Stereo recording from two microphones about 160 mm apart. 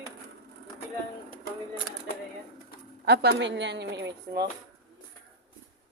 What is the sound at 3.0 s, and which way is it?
A woman's voice, 90° right.